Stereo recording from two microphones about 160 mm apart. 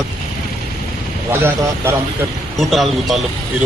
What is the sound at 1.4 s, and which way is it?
Speech, 15° right (ahead or behind).